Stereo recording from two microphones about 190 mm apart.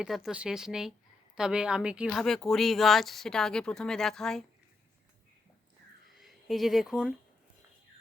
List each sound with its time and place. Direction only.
0.0 s speech: 5° right (ahead or behind)
6.1 s speech: centre (ahead or behind)